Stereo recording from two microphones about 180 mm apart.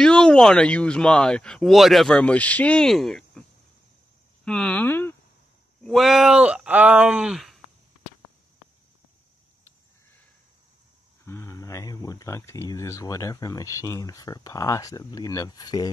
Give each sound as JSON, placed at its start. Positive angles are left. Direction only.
{"t": 0.0, "sound": "speech", "side_deg": 5}
{"t": 4.5, "sound": "speech", "side_deg": 5}
{"t": 5.9, "sound": "speech", "side_deg": 0}
{"t": 11.2, "sound": "speech", "side_deg": 15}